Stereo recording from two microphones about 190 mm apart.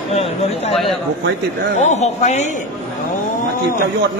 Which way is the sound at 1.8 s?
35° left (ahead or behind).